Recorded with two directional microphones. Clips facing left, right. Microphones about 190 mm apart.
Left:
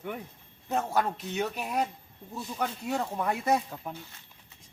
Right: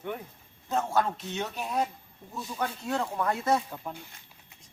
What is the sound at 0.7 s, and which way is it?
Speech, 10° left (ahead or behind).